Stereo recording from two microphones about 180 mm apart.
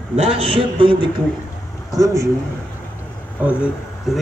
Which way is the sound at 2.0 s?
15° right (ahead or behind).